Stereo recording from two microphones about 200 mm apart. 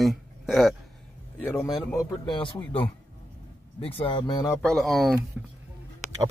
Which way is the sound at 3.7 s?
25° left (ahead or behind).